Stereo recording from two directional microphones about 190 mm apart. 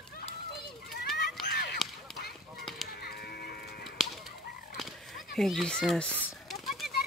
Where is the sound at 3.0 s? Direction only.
55° left (ahead or behind).